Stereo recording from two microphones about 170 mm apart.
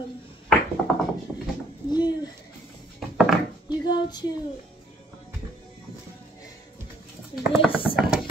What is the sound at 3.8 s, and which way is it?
Speech, 25° left (ahead or behind).